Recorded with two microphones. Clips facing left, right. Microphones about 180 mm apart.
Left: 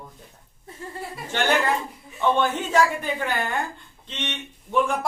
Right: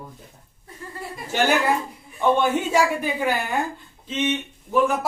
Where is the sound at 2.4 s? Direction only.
10° right (ahead or behind).